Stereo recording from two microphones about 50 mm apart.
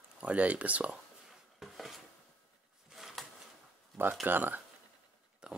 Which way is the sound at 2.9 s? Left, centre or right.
Centre.